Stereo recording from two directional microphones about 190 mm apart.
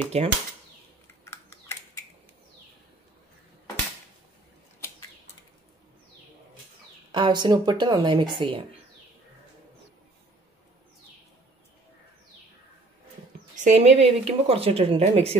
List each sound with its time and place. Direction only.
0.1 s speech: 35° right (ahead or behind)
1.2 s a sound: 15° left (ahead or behind)
7.1 s speech: 25° right (ahead or behind)
13.6 s speech: 35° right (ahead or behind)